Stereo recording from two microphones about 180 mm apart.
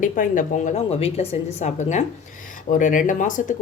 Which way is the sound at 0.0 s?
45° left (ahead or behind).